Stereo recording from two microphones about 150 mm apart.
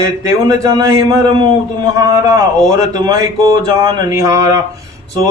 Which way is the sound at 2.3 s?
25° right (ahead or behind).